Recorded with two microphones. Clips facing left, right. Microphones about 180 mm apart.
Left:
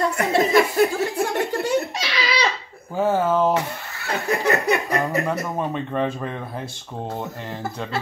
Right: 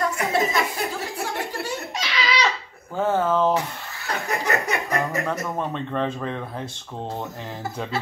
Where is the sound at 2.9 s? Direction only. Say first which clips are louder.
Left 2 dB; 10° left (ahead or behind).